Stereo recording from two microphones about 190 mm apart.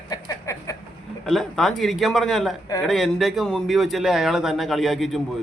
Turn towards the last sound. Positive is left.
turn(degrees=0)  # may be behind; listen again after turning